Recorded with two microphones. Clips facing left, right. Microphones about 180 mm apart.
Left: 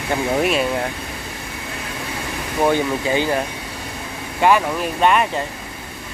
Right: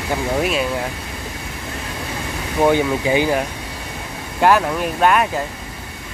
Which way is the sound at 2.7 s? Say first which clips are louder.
Right 2 dB; 15° right (ahead or behind).